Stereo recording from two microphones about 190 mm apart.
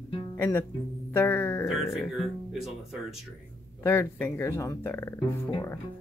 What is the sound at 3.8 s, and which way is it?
Speech, 15° left (ahead or behind).